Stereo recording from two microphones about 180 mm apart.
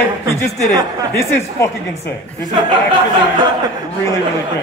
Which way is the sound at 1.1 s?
15° left (ahead or behind).